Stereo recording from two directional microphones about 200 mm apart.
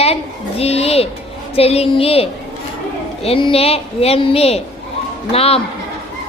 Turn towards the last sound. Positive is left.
turn(degrees=30)  # may be behind; listen again after turning